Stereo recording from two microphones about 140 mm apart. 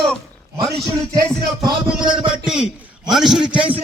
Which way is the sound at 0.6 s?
20° right (ahead or behind).